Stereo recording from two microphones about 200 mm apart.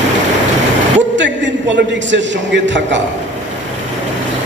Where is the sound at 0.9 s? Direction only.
65° right (ahead or behind).